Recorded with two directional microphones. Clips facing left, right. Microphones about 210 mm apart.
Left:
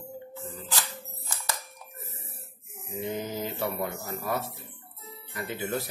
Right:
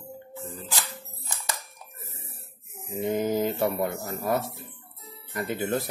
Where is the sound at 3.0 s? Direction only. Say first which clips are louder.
Right 7 dB; 45° right (ahead or behind).